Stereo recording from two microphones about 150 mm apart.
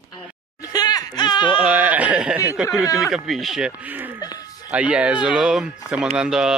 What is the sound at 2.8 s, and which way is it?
Speech, 20° left (ahead or behind).